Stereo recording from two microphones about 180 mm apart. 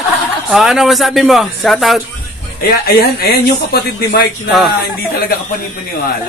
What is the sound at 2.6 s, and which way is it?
Speech, 60° left (ahead or behind).